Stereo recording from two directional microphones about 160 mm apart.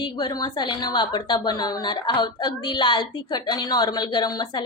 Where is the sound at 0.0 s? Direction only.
25° left (ahead or behind).